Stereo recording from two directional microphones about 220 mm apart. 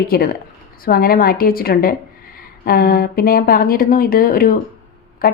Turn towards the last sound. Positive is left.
turn(degrees=40)  # may be behind; listen again after turning